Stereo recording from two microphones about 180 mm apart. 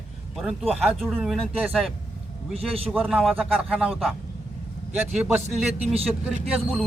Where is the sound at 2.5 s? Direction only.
35° right (ahead or behind).